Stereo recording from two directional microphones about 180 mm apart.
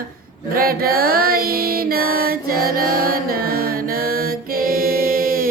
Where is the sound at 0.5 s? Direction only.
55° right (ahead or behind).